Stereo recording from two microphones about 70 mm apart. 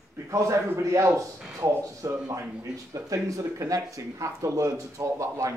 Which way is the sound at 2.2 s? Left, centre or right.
Right.